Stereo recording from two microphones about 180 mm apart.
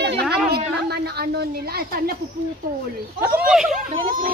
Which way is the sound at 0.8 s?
60° right (ahead or behind).